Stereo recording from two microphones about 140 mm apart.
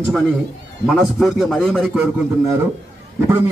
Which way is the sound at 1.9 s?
20° right (ahead or behind).